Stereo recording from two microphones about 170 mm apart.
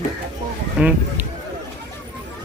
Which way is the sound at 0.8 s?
10° right (ahead or behind).